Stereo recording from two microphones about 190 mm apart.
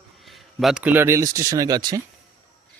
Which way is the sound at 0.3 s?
Centre (ahead or behind).